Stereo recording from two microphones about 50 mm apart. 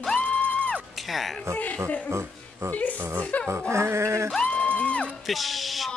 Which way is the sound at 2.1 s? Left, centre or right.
Right.